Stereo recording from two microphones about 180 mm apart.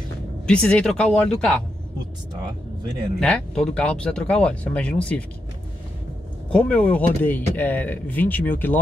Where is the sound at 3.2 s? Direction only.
5° left (ahead or behind).